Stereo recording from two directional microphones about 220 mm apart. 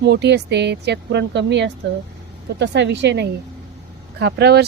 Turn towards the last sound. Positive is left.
turn(degrees=-50)  # may be behind; listen again after turning